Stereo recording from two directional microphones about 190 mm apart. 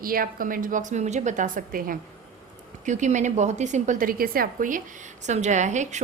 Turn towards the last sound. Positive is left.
turn(degrees=-40)  # may be behind; listen again after turning